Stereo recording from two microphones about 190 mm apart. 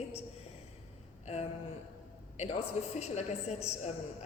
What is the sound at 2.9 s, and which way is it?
Speech, 35° left (ahead or behind).